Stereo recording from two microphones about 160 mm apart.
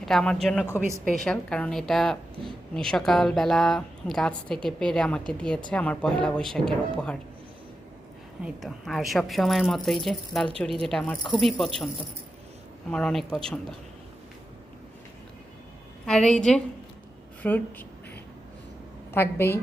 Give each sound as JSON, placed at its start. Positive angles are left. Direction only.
{"t": 0.0, "sound": "a woman's voice", "side_deg": 5}
{"t": 0.8, "sound": "a woman's voice", "side_deg": -20}
{"t": 1.1, "sound": "a woman's voice", "side_deg": 5}
{"t": 8.4, "sound": "a woman's voice", "side_deg": 0}
{"t": 12.9, "sound": "a woman's voice", "side_deg": 5}
{"t": 16.0, "sound": "a woman's voice", "side_deg": 5}
{"t": 19.1, "sound": "speech", "side_deg": 15}